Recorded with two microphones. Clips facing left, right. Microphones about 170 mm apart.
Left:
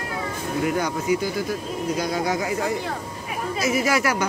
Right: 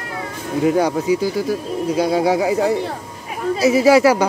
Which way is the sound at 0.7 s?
30° right (ahead or behind).